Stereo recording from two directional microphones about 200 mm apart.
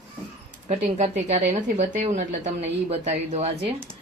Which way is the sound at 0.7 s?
35° right (ahead or behind).